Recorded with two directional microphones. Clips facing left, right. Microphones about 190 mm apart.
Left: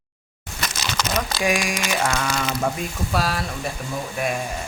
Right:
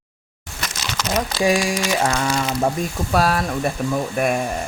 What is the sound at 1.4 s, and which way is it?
Speech, 30° right (ahead or behind).